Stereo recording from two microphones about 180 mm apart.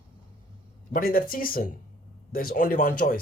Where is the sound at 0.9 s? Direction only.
55° left (ahead or behind).